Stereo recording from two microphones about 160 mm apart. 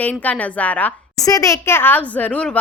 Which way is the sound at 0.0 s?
10° left (ahead or behind).